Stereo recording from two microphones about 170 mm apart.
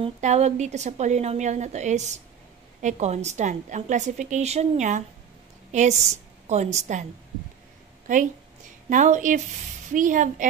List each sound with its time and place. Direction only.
0.0 s a woman's voice: 40° right (ahead or behind)
8.1 s a woman's voice: 50° right (ahead or behind)